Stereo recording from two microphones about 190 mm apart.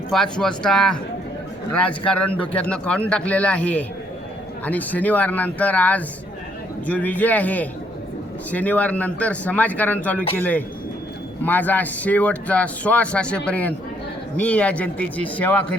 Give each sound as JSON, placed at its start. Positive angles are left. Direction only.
{"t": 0.1, "sound": "speech", "side_deg": 5}